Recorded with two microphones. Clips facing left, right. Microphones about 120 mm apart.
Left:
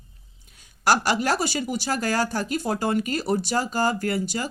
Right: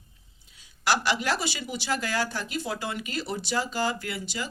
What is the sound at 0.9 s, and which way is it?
Speech, 45° left (ahead or behind).